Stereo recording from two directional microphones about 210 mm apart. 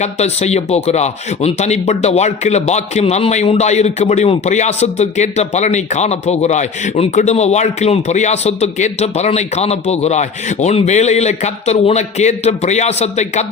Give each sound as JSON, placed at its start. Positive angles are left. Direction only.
{"t": 0.0, "sound": "speech", "side_deg": 30}